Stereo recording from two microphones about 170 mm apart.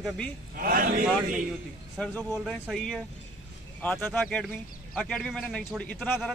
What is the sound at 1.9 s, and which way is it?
A man's voice, 5° left (ahead or behind).